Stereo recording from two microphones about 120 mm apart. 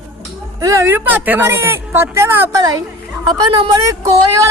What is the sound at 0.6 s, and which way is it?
A woman's voice, 25° right (ahead or behind).